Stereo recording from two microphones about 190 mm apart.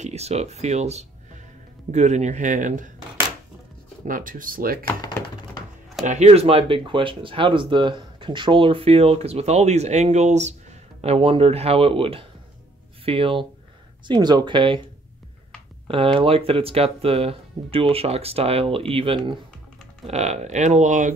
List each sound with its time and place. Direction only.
0.0 s speech: 35° right (ahead or behind)
4.0 s speech: 45° right (ahead or behind)
4.8 s a sound: 20° left (ahead or behind)
6.0 s speech: 35° right (ahead or behind)
15.9 s speech: 30° right (ahead or behind)
20.1 s speech: 35° right (ahead or behind)